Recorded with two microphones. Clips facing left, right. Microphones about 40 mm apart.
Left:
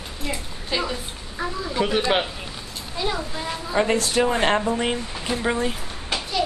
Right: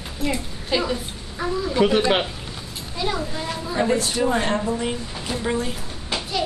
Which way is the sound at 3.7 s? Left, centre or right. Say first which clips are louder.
Left 1 dB; left.